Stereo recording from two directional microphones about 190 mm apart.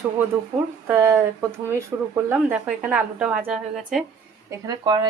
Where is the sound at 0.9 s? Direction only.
10° right (ahead or behind).